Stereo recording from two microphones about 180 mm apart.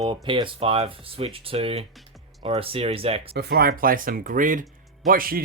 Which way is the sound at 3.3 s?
60° right (ahead or behind).